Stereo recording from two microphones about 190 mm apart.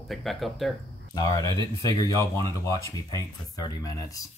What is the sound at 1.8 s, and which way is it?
Speech, 15° left (ahead or behind).